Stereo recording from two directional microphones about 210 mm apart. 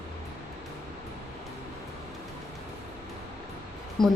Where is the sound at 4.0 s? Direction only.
Centre (ahead or behind).